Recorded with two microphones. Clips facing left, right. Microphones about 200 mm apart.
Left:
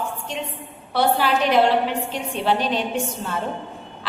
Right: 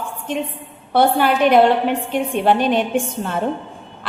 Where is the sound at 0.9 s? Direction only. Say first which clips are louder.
Right 4 dB; 55° right (ahead or behind).